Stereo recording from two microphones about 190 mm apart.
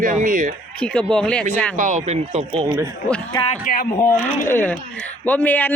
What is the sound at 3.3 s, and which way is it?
Speech, 30° left (ahead or behind).